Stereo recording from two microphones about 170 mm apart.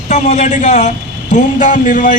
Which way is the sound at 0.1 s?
45° left (ahead or behind).